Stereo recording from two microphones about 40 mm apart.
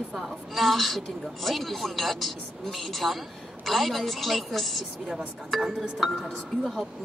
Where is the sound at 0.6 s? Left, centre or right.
Centre.